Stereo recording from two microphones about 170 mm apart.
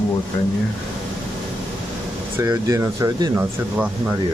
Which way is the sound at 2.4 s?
20° right (ahead or behind).